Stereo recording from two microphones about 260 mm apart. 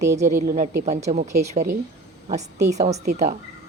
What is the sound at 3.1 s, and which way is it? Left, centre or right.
Speech, right.